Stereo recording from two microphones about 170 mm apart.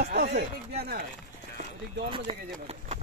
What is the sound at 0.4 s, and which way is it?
Speech, 65° right (ahead or behind).